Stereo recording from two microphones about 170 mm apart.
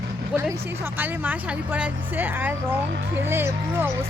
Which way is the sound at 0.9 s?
10° right (ahead or behind).